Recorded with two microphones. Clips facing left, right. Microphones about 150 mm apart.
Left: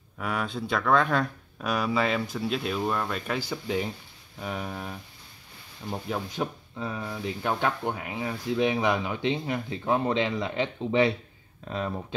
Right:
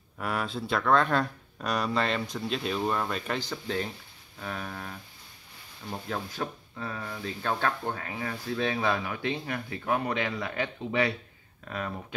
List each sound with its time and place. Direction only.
0.2 s speech: centre (ahead or behind); by 11.9 s 25° left (ahead or behind)